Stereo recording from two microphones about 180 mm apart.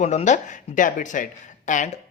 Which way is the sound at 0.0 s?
40° left (ahead or behind).